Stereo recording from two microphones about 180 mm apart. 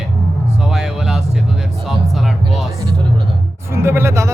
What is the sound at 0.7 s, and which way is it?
Music, centre (ahead or behind).